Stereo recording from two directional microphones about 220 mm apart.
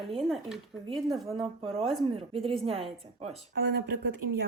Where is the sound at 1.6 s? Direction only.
25° right (ahead or behind).